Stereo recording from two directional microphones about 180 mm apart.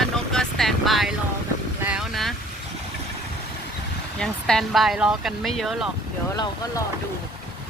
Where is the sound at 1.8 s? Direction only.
5° right (ahead or behind).